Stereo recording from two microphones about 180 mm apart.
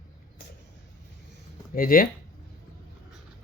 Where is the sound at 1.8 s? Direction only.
50° left (ahead or behind).